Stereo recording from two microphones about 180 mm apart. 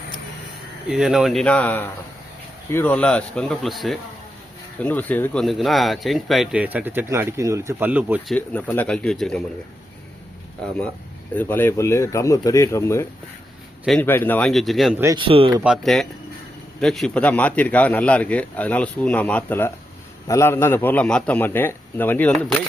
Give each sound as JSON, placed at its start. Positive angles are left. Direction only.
{"t": 0.9, "sound": "speech", "side_deg": -5}
{"t": 8.4, "sound": "speech", "side_deg": 10}
{"t": 11.3, "sound": "speech", "side_deg": 10}
{"t": 14.9, "sound": "speech", "side_deg": -15}
{"t": 15.2, "sound": "speech", "side_deg": -30}
{"t": 15.6, "sound": "speech", "side_deg": 0}